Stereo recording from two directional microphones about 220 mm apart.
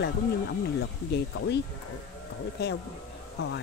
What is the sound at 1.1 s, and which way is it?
Speech, 50° left (ahead or behind).